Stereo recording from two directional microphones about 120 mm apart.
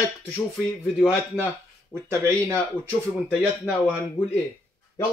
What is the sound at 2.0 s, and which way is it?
Speech, 20° right (ahead or behind).